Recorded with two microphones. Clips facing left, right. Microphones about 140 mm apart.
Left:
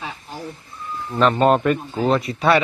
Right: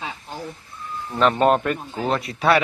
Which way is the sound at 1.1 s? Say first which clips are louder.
Left 1 dB; centre (ahead or behind).